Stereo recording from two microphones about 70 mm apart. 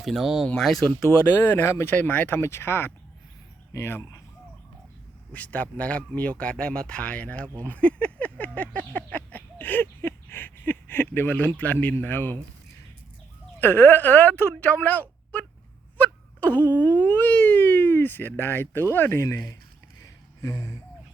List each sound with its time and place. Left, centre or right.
0.0 s speech: centre
1.4 s wail: left
2.4 s speech: left
5.3 s speech: left
13.6 s wail: left
20.0 s a sound: left